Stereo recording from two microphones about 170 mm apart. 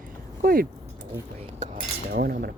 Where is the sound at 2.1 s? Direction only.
65° right (ahead or behind).